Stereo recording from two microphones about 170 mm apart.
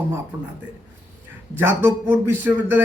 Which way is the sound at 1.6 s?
15° right (ahead or behind).